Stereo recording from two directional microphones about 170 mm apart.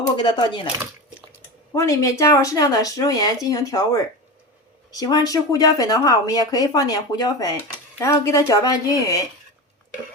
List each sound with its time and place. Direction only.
0.2 s speech: 25° left (ahead or behind)
1.7 s speech: 20° left (ahead or behind)